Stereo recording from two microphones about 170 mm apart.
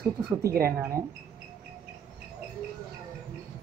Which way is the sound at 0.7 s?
15° right (ahead or behind).